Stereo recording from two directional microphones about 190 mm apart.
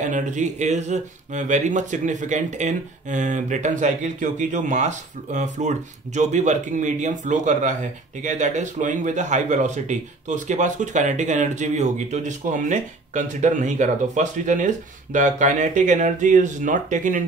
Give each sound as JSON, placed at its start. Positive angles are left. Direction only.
{"t": 0.0, "sound": "speech", "side_deg": -40}